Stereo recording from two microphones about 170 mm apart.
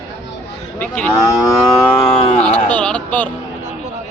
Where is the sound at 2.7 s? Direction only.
5° left (ahead or behind).